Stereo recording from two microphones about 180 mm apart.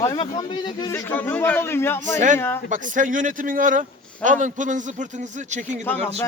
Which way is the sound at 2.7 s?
45° right (ahead or behind).